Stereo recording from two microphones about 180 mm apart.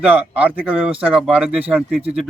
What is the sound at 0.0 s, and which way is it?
A man's voice, 10° right (ahead or behind).